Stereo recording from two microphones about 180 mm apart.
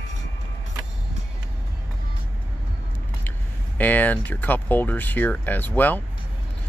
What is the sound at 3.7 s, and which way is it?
Speech, 10° left (ahead or behind).